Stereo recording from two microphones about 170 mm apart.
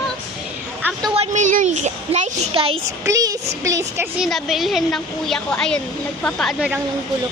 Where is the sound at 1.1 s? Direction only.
40° right (ahead or behind).